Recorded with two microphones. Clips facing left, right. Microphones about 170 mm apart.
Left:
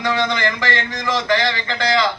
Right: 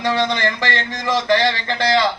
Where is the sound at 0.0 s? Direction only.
35° right (ahead or behind).